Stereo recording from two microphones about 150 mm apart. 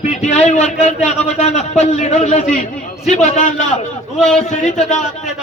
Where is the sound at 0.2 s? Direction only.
50° left (ahead or behind).